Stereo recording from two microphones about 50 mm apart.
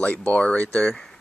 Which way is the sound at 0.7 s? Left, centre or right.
Centre.